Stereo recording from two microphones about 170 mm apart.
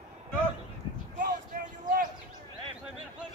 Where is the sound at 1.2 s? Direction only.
55° right (ahead or behind).